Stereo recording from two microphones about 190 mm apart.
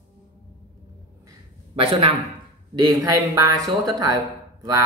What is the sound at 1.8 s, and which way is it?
A man's voice, 30° right (ahead or behind).